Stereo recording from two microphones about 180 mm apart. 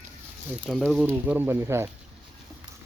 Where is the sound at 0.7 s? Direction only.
Centre (ahead or behind).